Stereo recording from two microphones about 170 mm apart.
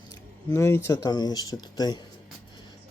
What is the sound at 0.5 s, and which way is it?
Speech, 15° left (ahead or behind).